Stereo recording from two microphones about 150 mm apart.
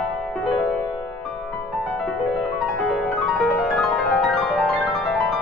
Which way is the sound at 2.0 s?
Centre (ahead or behind).